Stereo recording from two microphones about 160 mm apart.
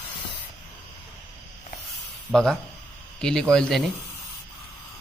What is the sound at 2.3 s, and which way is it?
Speech, 15° right (ahead or behind).